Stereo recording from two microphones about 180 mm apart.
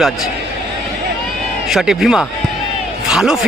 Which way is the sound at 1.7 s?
Centre (ahead or behind).